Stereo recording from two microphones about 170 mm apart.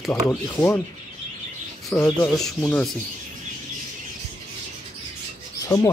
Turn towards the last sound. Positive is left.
turn(degrees=25)  # may be behind; listen again after turning